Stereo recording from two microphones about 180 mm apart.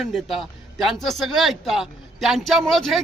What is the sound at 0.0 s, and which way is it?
Speech, centre (ahead or behind).